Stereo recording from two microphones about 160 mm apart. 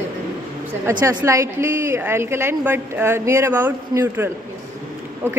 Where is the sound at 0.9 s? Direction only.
20° right (ahead or behind).